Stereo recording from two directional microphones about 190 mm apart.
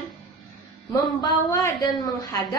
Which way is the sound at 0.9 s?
20° left (ahead or behind).